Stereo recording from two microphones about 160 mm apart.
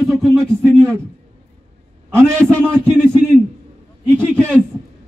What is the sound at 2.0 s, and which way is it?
A man's voice, 15° right (ahead or behind).